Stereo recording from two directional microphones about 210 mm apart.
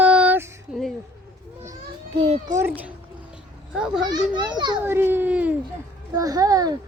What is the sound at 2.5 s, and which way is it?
A child's voice, 10° right (ahead or behind).